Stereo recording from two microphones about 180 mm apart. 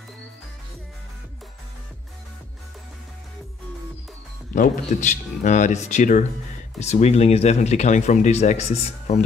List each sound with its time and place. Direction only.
4.6 s speech: 45° left (ahead or behind)